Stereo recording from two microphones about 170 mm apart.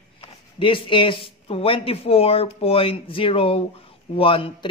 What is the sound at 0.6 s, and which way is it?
Speech, 30° left (ahead or behind).